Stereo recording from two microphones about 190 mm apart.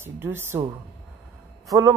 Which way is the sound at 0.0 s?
10° right (ahead or behind).